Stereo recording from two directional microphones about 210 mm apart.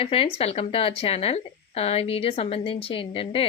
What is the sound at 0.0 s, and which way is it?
A woman's voice, 25° left (ahead or behind).